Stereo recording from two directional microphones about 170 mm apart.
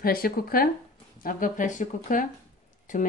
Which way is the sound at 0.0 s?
60° left (ahead or behind).